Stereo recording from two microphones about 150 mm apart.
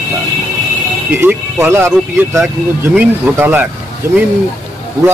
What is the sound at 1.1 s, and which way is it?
A man's voice, 15° right (ahead or behind).